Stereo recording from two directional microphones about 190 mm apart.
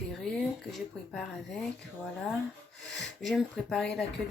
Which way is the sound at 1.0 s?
5° left (ahead or behind).